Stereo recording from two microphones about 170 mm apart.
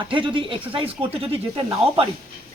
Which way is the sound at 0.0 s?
30° right (ahead or behind).